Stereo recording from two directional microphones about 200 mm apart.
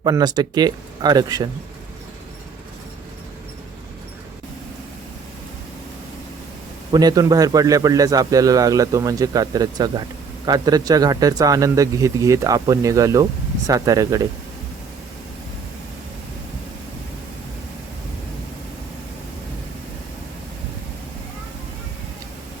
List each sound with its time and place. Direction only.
0.0 s speech: 20° right (ahead or behind)
6.9 s a man's voice: 20° right (ahead or behind)